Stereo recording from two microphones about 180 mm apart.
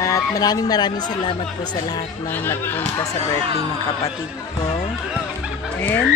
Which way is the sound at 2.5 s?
10° left (ahead or behind).